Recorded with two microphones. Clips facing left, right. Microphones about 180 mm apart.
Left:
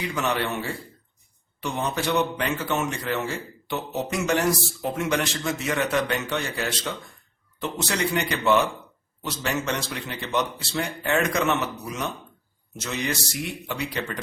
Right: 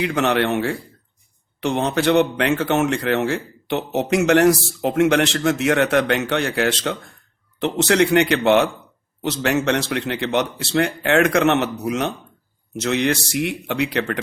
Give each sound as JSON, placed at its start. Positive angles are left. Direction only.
{"t": 0.0, "sound": "a man's voice", "side_deg": -65}